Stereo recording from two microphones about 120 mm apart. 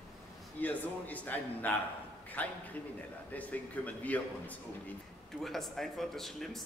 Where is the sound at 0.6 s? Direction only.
15° left (ahead or behind).